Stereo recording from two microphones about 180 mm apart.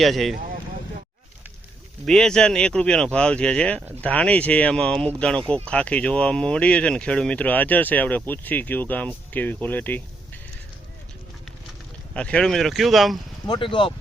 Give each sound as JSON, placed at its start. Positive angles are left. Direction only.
{"t": 0.0, "sound": "speech", "side_deg": 0}
{"t": 2.0, "sound": "speech", "side_deg": 5}
{"t": 12.1, "sound": "speech", "side_deg": 5}
{"t": 13.5, "sound": "speech", "side_deg": 25}